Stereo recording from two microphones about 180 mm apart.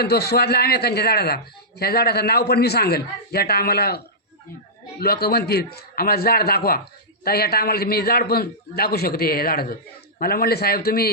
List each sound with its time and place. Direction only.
0.0 s a man's voice: 60° left (ahead or behind)